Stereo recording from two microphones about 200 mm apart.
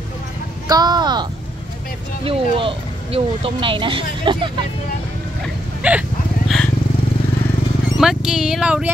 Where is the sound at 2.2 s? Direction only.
30° right (ahead or behind).